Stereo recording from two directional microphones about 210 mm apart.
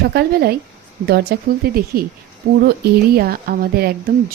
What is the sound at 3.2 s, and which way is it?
Speech, 45° right (ahead or behind).